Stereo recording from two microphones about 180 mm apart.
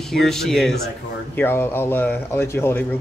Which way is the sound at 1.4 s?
10° left (ahead or behind).